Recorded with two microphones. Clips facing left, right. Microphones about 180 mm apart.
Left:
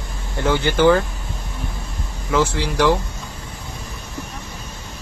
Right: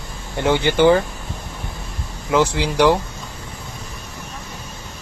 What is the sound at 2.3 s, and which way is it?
Speech, 20° right (ahead or behind).